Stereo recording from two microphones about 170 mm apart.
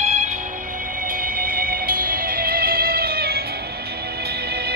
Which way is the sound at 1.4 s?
60° right (ahead or behind).